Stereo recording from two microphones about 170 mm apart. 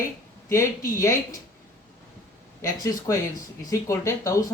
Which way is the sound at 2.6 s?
15° left (ahead or behind).